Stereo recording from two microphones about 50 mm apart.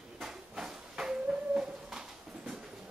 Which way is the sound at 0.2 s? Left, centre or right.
Centre.